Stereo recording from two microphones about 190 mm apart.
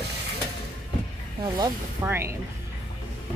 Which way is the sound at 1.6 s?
15° right (ahead or behind).